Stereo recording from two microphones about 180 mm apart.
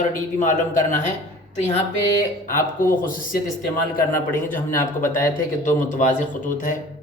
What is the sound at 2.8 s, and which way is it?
Speech, 50° left (ahead or behind).